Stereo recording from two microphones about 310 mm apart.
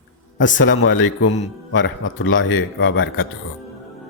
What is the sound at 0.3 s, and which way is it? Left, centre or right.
A man's voice, left.